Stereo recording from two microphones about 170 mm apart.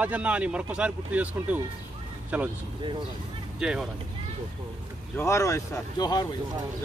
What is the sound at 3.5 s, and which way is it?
Speech, 5° right (ahead or behind).